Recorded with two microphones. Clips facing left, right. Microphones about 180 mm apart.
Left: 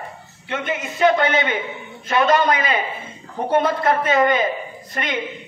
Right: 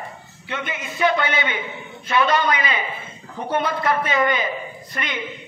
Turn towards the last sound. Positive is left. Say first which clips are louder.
# left 3 dB
turn(degrees=40)  # may be behind; listen again after turning